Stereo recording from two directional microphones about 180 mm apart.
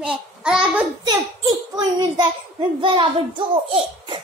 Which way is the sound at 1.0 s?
20° right (ahead or behind).